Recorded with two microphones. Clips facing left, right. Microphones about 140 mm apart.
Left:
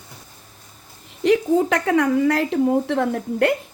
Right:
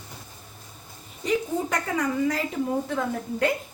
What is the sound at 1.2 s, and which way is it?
Speech, 80° left.